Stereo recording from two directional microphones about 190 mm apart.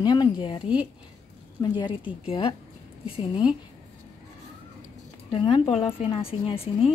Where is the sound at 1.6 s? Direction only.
25° left (ahead or behind).